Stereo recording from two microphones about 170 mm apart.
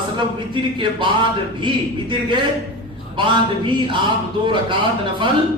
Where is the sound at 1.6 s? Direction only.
30° right (ahead or behind).